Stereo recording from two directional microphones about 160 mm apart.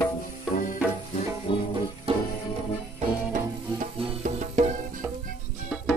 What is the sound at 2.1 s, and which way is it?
Music, 35° right (ahead or behind).